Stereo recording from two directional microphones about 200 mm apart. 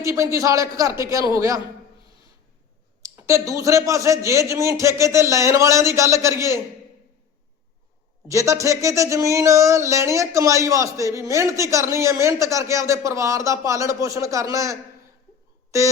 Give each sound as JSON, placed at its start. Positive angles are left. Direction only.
{"t": 0.0, "sound": "speech", "side_deg": -15}
{"t": 3.0, "sound": "speech", "side_deg": -15}
{"t": 8.3, "sound": "speech", "side_deg": -15}